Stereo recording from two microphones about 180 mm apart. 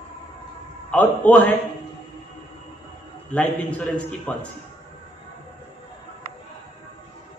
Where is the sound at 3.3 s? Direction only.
10° left (ahead or behind).